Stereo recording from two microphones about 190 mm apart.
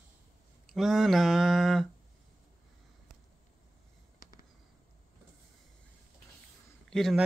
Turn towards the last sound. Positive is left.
turn(degrees=0)  # may be behind; listen again after turning